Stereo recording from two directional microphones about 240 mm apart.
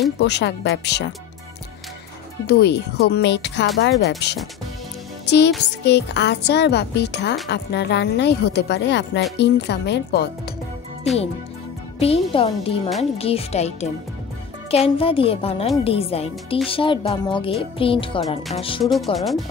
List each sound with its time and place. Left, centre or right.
0.2 s speech: left
2.4 s speech: left
5.2 s music: left
5.9 s speech: left
12.0 s speech: left
19.1 s speech: centre